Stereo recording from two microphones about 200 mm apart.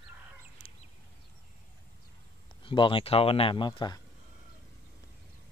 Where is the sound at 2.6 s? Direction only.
25° left (ahead or behind).